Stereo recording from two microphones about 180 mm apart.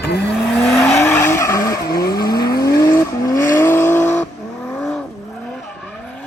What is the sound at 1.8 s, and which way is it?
Vehicle, 60° left (ahead or behind).